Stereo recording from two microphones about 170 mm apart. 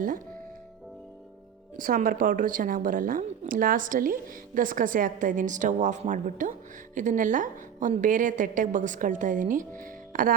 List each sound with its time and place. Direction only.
1.8 s a woman's voice: 55° right (ahead or behind)